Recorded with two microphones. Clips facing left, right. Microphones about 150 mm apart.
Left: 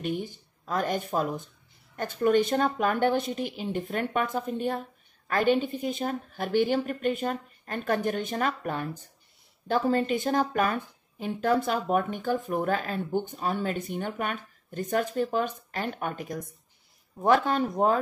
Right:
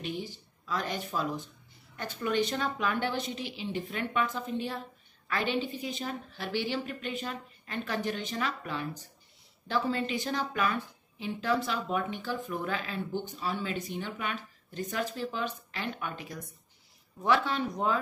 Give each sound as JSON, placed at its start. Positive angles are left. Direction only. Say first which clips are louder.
{"t": 0.0, "sound": "a woman's voice", "louder": "left 5 dB", "side_deg": 50}